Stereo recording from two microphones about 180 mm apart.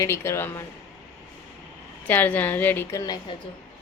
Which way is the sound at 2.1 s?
10° left (ahead or behind).